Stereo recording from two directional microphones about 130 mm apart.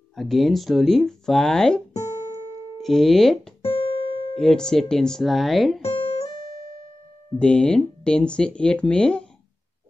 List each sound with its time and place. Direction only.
0.1 s speech: centre (ahead or behind)
2.0 s music: 30° left (ahead or behind)
2.8 s speech: centre (ahead or behind)
3.6 s music: 45° left (ahead or behind)
4.4 s speech: 5° left (ahead or behind)
7.3 s speech: 10° left (ahead or behind)